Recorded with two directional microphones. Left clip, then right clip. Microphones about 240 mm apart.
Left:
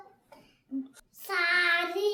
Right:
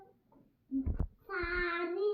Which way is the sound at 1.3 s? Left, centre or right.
Centre.